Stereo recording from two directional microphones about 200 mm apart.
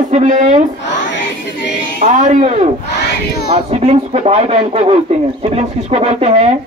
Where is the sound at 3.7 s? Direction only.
30° right (ahead or behind).